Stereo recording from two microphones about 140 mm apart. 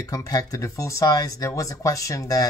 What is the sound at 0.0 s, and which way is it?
Speech, 25° left (ahead or behind).